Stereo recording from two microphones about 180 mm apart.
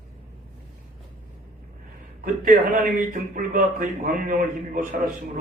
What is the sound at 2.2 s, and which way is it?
A man's voice, 50° right (ahead or behind).